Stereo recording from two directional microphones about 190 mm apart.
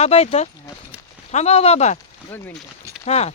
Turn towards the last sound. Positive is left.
turn(degrees=35)  # may be behind; listen again after turning